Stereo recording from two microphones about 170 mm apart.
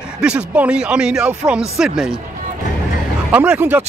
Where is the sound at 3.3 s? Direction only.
10° right (ahead or behind).